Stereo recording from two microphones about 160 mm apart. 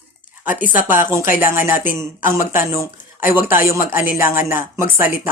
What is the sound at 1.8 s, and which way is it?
Speech, 10° right (ahead or behind).